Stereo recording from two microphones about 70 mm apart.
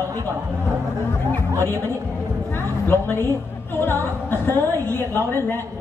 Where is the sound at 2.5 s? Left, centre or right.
Left.